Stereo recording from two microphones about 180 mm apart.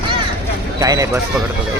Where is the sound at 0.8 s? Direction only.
20° right (ahead or behind).